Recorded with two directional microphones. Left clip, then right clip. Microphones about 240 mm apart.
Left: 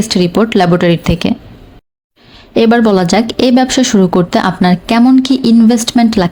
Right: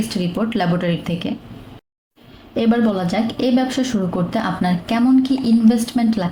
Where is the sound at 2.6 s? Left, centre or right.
Left.